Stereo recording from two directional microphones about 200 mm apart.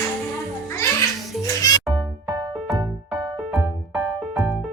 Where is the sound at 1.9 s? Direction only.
25° right (ahead or behind).